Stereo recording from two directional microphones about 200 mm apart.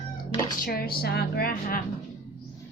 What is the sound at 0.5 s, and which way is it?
Speech, 45° left (ahead or behind).